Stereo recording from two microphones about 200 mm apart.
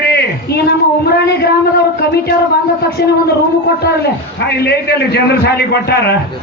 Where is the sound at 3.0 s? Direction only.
55° left (ahead or behind).